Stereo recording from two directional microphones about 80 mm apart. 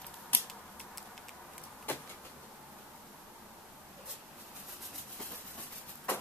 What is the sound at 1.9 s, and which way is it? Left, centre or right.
Vehicle, left.